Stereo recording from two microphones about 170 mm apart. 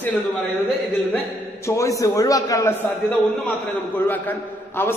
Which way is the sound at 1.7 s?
20° left (ahead or behind).